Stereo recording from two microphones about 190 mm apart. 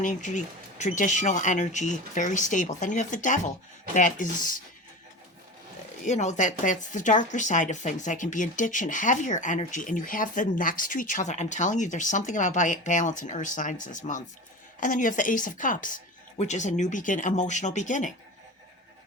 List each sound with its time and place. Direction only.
0.0 s a woman's voice: 40° left (ahead or behind)
6.1 s a woman's voice: 40° left (ahead or behind)